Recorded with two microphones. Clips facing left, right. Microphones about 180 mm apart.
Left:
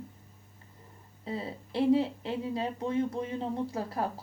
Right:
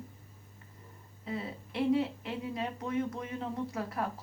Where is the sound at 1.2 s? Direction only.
30° left (ahead or behind).